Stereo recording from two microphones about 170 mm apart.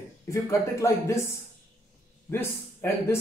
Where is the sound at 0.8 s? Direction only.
15° left (ahead or behind).